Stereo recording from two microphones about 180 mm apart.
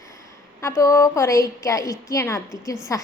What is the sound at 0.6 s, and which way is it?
A woman's voice, 15° left (ahead or behind).